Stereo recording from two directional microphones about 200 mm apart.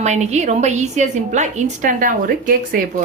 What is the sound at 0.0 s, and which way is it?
Speech, 35° right (ahead or behind).